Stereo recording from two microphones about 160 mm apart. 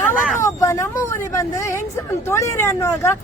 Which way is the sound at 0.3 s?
20° left (ahead or behind).